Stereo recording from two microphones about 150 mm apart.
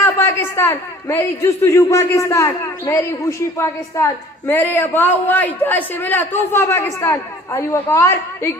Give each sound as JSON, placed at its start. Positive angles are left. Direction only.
{"t": 0.0, "sound": "a man's voice", "side_deg": 20}